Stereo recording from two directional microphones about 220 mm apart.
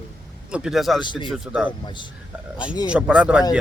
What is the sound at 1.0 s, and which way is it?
Speech, 20° left (ahead or behind).